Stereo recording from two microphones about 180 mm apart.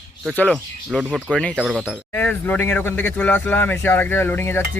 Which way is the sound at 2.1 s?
10° left (ahead or behind).